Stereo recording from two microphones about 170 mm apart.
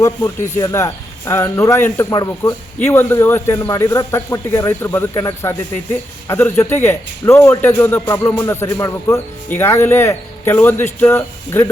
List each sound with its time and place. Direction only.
0.6 s speech: 20° left (ahead or behind)